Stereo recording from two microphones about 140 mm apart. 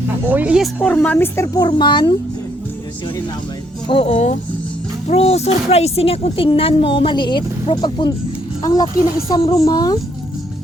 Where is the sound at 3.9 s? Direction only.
45° left (ahead or behind); by 10.0 s 30° left (ahead or behind).